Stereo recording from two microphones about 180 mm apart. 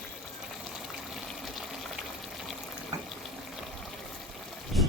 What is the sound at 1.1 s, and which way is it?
Water, centre (ahead or behind).